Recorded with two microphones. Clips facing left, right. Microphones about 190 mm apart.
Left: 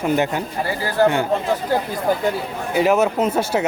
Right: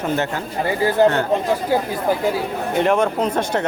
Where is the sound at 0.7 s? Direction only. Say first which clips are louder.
Right 3 dB; 20° right (ahead or behind).